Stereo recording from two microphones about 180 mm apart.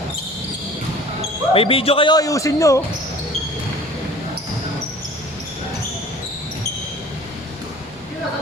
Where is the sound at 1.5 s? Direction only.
30° left (ahead or behind).